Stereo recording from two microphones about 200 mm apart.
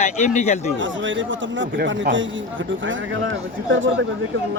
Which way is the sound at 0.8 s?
70° right (ahead or behind).